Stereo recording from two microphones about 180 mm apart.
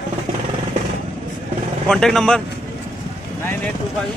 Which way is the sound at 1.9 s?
5° left (ahead or behind).